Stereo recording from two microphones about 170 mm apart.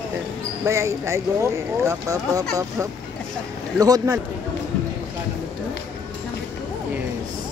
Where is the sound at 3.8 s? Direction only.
20° right (ahead or behind).